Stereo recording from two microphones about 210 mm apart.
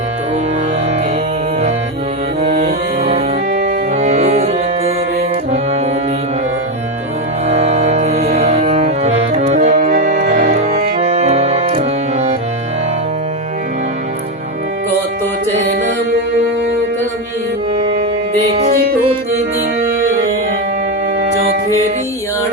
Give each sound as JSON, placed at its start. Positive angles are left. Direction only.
{"t": 2.4, "sound": "music", "side_deg": -30}
{"t": 7.4, "sound": "music", "side_deg": -30}
{"t": 9.0, "sound": "accordion", "side_deg": -35}
{"t": 10.3, "sound": "music", "side_deg": -40}